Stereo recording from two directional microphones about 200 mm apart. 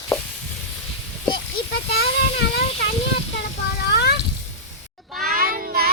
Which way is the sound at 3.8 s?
55° left (ahead or behind).